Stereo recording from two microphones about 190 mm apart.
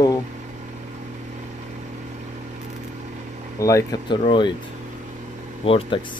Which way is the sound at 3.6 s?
20° left (ahead or behind).